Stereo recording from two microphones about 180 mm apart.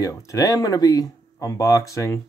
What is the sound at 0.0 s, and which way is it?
Speech, 15° left (ahead or behind).